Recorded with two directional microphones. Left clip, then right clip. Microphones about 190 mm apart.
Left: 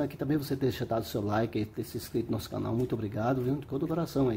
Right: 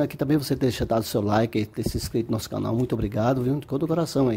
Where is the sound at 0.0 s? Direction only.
35° right (ahead or behind).